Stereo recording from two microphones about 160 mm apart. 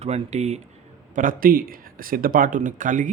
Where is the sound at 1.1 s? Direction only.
60° right (ahead or behind).